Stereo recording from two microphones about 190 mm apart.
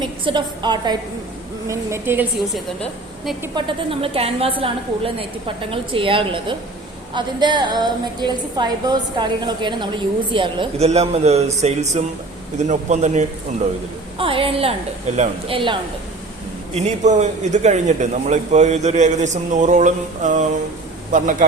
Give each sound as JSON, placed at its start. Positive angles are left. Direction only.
{"t": 0.3, "sound": "a woman's voice", "side_deg": -25}
{"t": 3.5, "sound": "a woman's voice", "side_deg": -25}